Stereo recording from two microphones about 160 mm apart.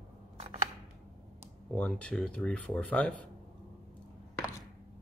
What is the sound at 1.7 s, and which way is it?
Speech, 10° left (ahead or behind).